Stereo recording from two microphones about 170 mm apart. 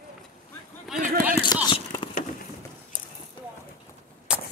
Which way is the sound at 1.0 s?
50° right (ahead or behind).